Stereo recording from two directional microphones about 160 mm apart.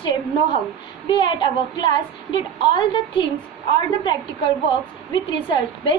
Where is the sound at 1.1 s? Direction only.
30° left (ahead or behind).